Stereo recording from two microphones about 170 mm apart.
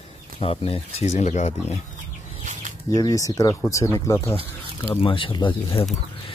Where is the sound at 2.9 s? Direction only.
20° left (ahead or behind).